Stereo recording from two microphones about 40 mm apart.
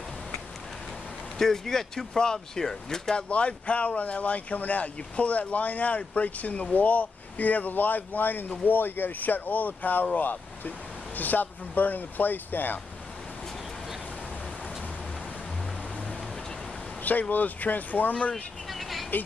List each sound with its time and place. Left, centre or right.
1.4 s speech: centre
3.2 s speech: left
17.0 s speech: left
18.3 s vehicle: centre